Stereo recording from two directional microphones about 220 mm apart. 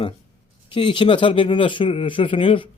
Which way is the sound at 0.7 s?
20° left (ahead or behind).